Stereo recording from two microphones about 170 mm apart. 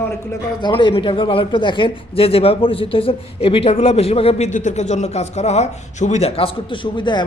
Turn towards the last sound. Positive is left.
turn(degrees=25)  # may be behind; listen again after turning